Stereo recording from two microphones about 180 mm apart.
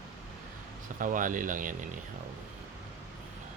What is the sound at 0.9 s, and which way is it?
Speech, 45° right (ahead or behind).